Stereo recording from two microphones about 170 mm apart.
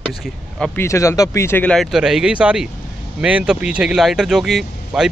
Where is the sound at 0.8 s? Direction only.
15° left (ahead or behind).